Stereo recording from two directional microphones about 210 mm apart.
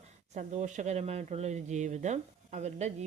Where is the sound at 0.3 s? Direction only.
35° right (ahead or behind).